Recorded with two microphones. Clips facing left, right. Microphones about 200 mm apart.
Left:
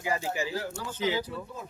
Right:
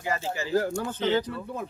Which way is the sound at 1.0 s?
10° left (ahead or behind).